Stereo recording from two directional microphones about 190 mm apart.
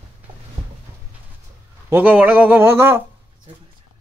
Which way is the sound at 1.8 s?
10° right (ahead or behind).